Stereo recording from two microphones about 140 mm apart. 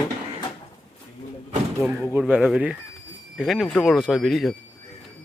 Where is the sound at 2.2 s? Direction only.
5° right (ahead or behind).